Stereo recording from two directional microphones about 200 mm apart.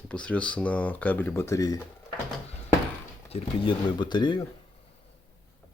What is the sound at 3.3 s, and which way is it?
Speech, 25° left (ahead or behind).